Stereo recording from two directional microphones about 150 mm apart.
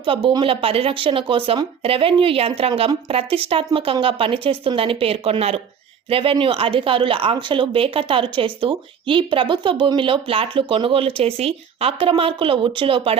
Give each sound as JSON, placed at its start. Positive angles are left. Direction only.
{"t": 0.0, "sound": "a woman's voice", "side_deg": -35}